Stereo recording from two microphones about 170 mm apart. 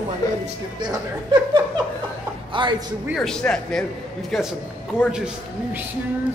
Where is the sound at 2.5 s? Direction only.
30° right (ahead or behind).